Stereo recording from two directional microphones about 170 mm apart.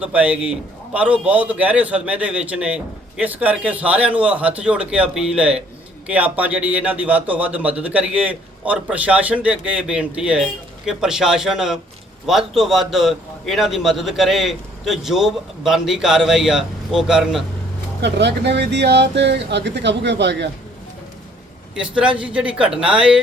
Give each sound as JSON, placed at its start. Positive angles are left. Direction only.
{"t": 0.0, "sound": "a man's voice", "side_deg": -10}
{"t": 18.0, "sound": "speech", "side_deg": -85}
{"t": 21.8, "sound": "speech", "side_deg": -5}